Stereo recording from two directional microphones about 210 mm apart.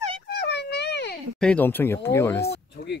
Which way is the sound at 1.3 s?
5° left (ahead or behind).